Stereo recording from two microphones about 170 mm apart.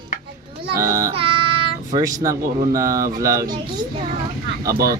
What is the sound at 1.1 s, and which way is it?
Child singing, 35° right (ahead or behind).